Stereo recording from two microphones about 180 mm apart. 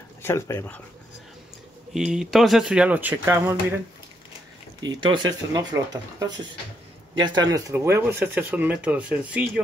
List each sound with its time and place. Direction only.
0.2 s speech: 15° left (ahead or behind)
2.0 s speech: 5° right (ahead or behind)
4.8 s speech: 25° right (ahead or behind); by 9.5 s 5° right (ahead or behind)